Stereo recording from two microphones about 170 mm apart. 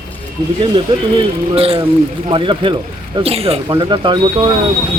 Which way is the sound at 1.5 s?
35° right (ahead or behind).